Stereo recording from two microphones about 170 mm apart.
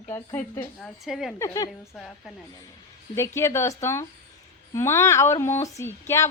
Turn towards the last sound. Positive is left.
turn(degrees=15)  # may be behind; listen again after turning